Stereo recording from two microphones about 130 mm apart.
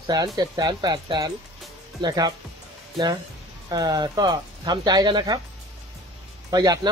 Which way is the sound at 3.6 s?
30° right (ahead or behind).